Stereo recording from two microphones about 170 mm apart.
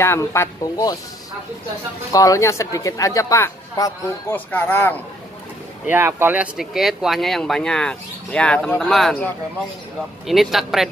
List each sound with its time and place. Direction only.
0.0 s speech: 15° left (ahead or behind)
2.1 s speech: 20° left (ahead or behind)
5.9 s speech: 15° right (ahead or behind)